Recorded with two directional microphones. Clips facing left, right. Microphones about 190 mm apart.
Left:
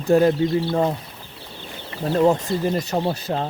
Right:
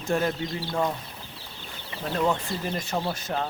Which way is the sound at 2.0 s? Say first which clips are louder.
Left 8 dB; 35° left (ahead or behind).